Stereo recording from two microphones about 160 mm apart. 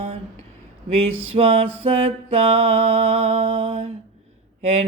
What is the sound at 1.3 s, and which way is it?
Mantra, 40° right (ahead or behind).